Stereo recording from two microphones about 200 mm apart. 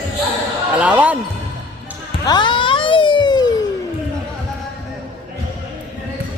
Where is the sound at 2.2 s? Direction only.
20° left (ahead or behind).